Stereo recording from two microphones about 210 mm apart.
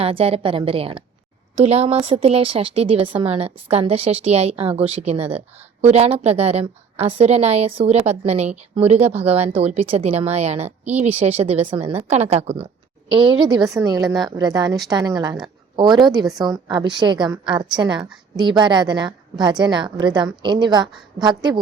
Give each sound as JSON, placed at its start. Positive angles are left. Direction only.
{"t": 0.0, "sound": "a woman's voice", "side_deg": -25}